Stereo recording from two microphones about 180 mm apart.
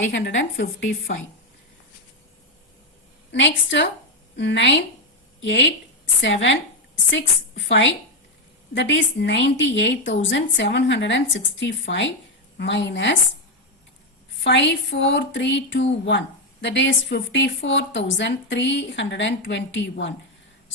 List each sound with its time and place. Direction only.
0.0 s speech: 90° left
3.3 s a woman's voice: 85° left
14.4 s speech: 75° left (ahead or behind)